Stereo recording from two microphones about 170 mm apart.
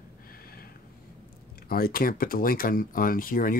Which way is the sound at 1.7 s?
60° left (ahead or behind).